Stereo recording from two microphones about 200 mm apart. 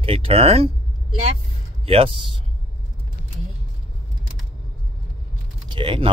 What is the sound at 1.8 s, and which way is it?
Speech, 30° right (ahead or behind).